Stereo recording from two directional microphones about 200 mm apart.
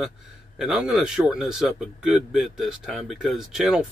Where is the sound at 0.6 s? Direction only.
5° right (ahead or behind).